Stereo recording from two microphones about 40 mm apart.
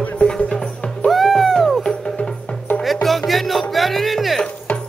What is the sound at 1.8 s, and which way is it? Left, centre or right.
Music, centre.